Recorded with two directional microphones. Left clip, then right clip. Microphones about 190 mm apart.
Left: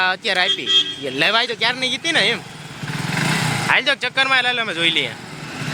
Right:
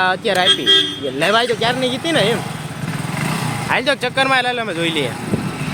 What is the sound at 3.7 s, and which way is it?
Speech, 5° right (ahead or behind).